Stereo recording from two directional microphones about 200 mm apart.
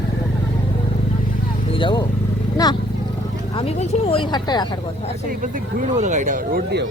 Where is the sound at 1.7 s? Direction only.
25° left (ahead or behind).